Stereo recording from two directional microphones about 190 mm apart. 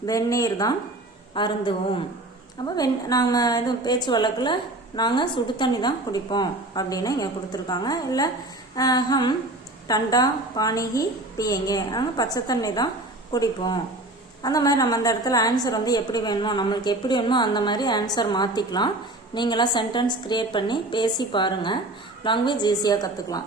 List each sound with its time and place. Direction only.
0.0 s a woman's voice: 15° left (ahead or behind)